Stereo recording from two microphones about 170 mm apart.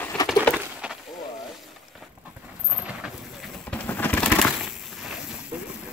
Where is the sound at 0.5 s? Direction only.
5° right (ahead or behind).